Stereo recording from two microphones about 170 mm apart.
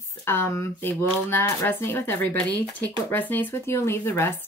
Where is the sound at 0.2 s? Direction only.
15° left (ahead or behind).